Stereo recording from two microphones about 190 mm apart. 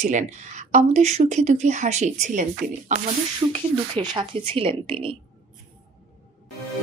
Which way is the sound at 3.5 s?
25° right (ahead or behind).